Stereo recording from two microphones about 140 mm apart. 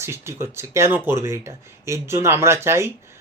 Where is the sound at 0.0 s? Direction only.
20° right (ahead or behind).